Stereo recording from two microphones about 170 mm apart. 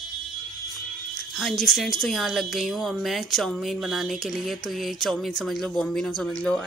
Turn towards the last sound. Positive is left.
turn(degrees=5)  # may be behind; listen again after turning